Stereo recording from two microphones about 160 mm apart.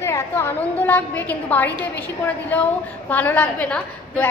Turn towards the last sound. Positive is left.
turn(degrees=10)  # may be behind; listen again after turning